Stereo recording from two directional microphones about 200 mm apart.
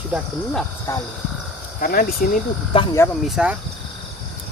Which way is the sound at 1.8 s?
45° left (ahead or behind).